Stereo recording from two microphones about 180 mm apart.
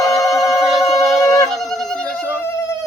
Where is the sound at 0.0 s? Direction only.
Centre (ahead or behind).